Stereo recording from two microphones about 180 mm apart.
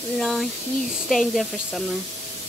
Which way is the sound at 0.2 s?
Centre (ahead or behind).